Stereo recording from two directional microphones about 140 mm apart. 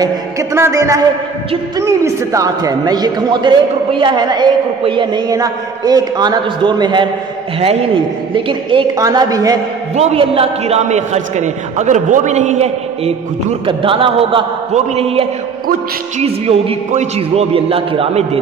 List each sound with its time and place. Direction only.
0.0 s a man's voice: 25° right (ahead or behind)
8.9 s a man's voice: 25° right (ahead or behind)
9.9 s a man's voice: 45° right (ahead or behind)
13.7 s a man's voice: 40° right (ahead or behind)